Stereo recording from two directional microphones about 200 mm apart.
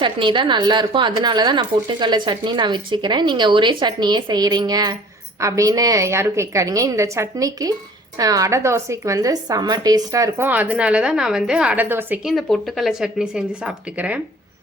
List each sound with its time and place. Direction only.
0.0 s a woman's voice: 25° right (ahead or behind); by 14.2 s 5° right (ahead or behind)